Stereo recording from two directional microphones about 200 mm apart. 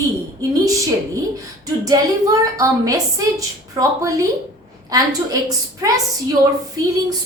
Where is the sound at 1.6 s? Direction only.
15° right (ahead or behind).